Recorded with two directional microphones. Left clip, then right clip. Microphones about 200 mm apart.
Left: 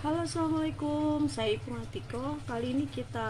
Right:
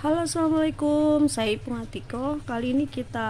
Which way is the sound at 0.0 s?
60° right (ahead or behind).